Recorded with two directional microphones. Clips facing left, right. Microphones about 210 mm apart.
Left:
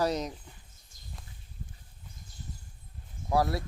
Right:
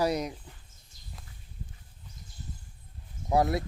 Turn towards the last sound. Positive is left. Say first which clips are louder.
# right 2 dB
turn(degrees=-20)  # may be behind; listen again after turning